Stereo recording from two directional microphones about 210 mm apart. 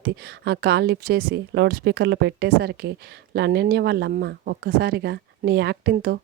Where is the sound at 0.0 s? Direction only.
50° right (ahead or behind).